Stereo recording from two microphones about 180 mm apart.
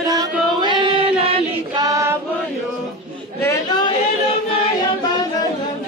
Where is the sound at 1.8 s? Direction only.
15° right (ahead or behind).